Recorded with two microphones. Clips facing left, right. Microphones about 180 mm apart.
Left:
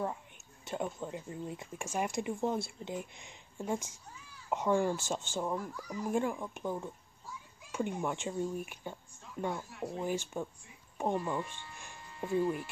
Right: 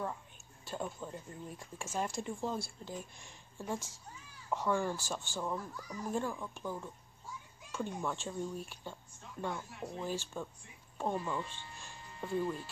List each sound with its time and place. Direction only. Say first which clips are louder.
0.7 s speech: left 4 dB; 20° left (ahead or behind)